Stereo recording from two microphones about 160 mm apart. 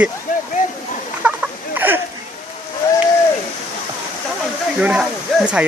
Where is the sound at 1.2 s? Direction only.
10° right (ahead or behind).